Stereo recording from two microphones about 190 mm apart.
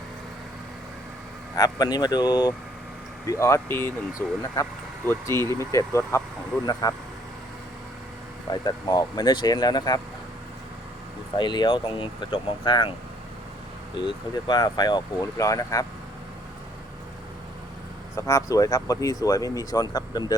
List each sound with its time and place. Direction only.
1.5 s speech: 20° left (ahead or behind)
8.4 s speech: 20° left (ahead or behind)
11.3 s speech: 25° left (ahead or behind)
13.9 s speech: 25° left (ahead or behind)
18.2 s speech: 15° left (ahead or behind)